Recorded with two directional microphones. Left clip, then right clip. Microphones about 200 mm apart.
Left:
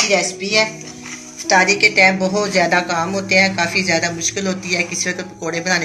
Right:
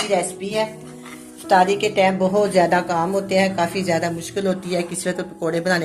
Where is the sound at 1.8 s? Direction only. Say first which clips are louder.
Left 6 dB; 40° right (ahead or behind).